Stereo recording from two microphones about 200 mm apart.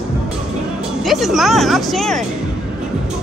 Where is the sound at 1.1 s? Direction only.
Centre (ahead or behind).